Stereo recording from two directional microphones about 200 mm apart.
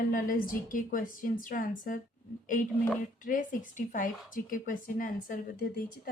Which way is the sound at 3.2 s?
40° left (ahead or behind).